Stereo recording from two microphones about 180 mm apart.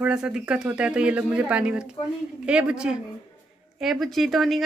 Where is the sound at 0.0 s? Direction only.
5° right (ahead or behind).